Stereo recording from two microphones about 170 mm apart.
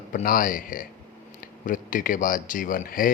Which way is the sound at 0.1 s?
55° left (ahead or behind).